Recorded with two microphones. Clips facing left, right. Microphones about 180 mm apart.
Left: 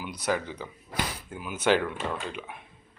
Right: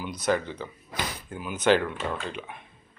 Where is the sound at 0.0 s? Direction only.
10° left (ahead or behind).